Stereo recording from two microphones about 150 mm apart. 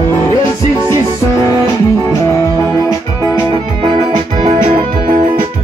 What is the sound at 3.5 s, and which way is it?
Music, 35° right (ahead or behind).